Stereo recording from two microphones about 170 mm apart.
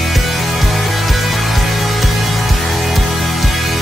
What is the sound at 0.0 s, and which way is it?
Music, centre (ahead or behind).